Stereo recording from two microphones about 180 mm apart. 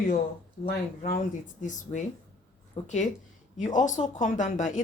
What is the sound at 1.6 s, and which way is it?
A woman's voice, 45° left (ahead or behind).